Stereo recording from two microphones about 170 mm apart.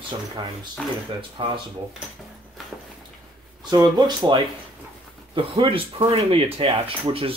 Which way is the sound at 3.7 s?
25° right (ahead or behind).